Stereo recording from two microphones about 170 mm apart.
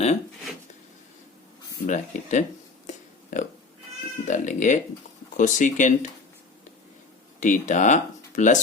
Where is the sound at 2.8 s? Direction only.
50° left (ahead or behind).